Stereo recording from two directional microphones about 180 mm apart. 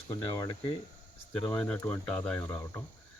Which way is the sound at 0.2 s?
20° left (ahead or behind).